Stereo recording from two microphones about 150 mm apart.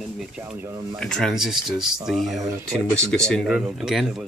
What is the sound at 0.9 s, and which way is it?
Speech, 5° left (ahead or behind).